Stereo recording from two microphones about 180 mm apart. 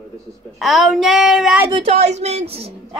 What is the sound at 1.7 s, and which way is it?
A woman's voice, 35° right (ahead or behind).